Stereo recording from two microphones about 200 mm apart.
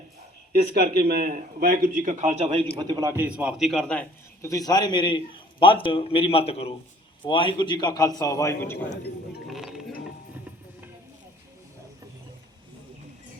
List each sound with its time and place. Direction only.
0.5 s speech: 50° right (ahead or behind); by 2.6 s 30° right (ahead or behind)
2.8 s a man's voice: 15° right (ahead or behind); by 4.0 s 5° left (ahead or behind)
4.4 s a man's voice: 20° left (ahead or behind)
9.5 s a sound: centre (ahead or behind)